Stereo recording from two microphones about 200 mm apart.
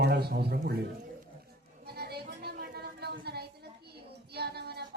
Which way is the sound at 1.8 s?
50° right (ahead or behind).